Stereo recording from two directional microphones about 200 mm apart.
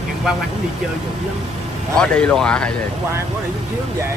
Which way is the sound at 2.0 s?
5° left (ahead or behind).